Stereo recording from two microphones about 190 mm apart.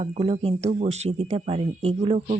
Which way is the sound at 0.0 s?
30° right (ahead or behind).